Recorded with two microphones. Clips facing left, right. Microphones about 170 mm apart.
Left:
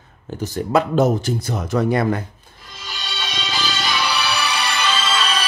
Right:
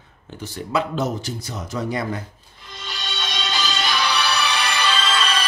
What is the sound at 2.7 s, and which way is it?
Music, centre (ahead or behind).